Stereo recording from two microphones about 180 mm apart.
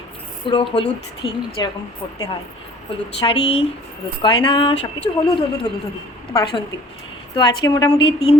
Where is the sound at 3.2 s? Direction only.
30° left (ahead or behind).